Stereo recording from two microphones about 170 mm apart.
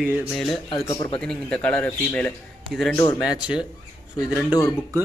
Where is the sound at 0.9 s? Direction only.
30° left (ahead or behind).